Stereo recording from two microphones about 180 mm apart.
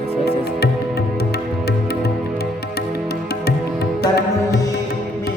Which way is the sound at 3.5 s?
65° left (ahead or behind).